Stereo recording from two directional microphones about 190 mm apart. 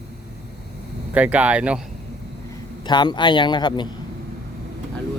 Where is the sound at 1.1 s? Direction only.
10° right (ahead or behind).